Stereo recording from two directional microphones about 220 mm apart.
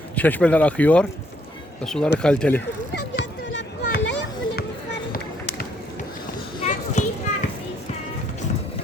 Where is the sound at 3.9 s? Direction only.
45° left (ahead or behind).